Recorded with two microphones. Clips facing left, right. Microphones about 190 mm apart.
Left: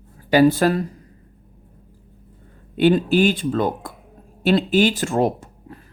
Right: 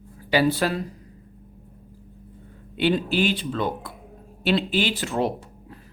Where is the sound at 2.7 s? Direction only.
45° left (ahead or behind).